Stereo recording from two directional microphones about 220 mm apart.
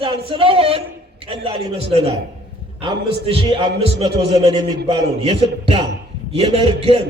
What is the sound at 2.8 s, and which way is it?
A man's voice, 20° right (ahead or behind).